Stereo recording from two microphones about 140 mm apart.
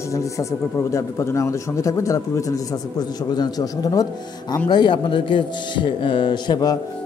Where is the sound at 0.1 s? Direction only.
20° left (ahead or behind).